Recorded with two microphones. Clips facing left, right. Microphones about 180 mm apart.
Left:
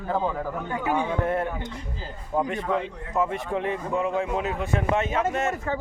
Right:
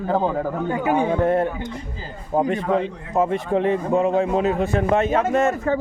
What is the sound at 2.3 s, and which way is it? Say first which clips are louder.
Speech: right 5 dB; 35° right (ahead or behind).